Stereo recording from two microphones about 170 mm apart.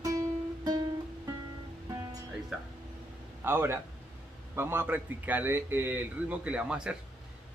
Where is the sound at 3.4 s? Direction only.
15° right (ahead or behind).